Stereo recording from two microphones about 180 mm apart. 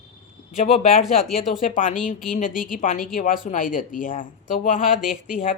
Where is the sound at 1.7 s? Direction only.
45° left (ahead or behind).